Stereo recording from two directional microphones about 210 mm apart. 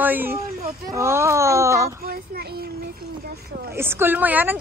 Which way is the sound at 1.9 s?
45° right (ahead or behind).